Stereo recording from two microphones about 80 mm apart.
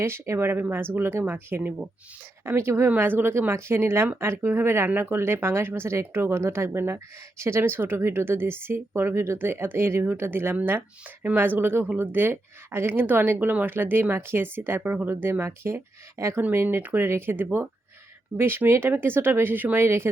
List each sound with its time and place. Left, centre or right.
0.0 s speech: right
16.4 s speech: right